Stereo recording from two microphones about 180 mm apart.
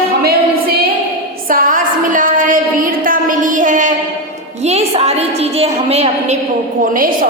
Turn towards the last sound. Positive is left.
turn(degrees=-50)  # may be behind; listen again after turning